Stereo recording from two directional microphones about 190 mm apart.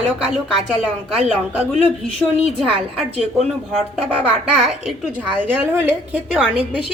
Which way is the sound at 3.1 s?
35° right (ahead or behind).